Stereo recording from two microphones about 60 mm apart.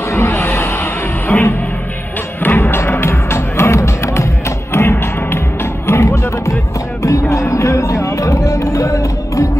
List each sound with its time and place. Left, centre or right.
0.3 s a sound: left
1.3 s music: left
2.8 s music: left